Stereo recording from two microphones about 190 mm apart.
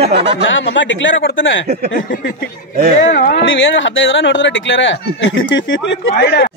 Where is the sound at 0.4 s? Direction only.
80° left.